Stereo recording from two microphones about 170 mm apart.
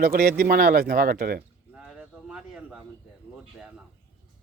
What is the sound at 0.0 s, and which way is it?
Speech, 60° right (ahead or behind).